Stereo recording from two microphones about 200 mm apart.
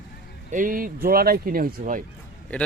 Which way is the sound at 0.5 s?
45° right (ahead or behind).